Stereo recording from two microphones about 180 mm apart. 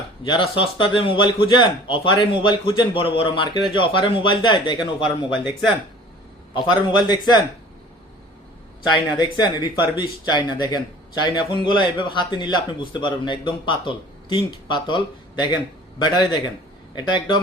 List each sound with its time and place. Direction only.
0.3 s a man's voice: 30° left (ahead or behind)
5.5 s speech: centre (ahead or behind)
6.5 s a man's voice: 25° left (ahead or behind)
9.4 s a man's voice: 25° left (ahead or behind)